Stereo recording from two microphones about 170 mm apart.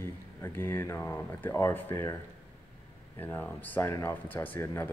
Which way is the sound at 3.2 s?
10° left (ahead or behind).